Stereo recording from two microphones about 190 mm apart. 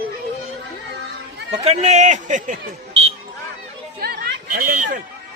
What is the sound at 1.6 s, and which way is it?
Speech, 35° right (ahead or behind).